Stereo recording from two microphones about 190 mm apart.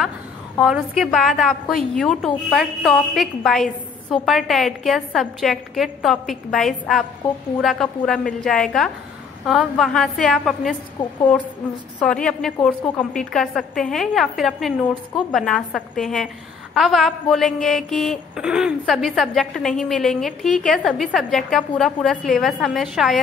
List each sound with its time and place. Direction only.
0.6 s a woman's voice: centre (ahead or behind)
11.0 s a woman's voice: 25° left (ahead or behind)
12.0 s a woman's voice: 5° left (ahead or behind)